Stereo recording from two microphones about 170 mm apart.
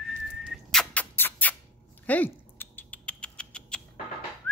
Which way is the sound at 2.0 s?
10° left (ahead or behind).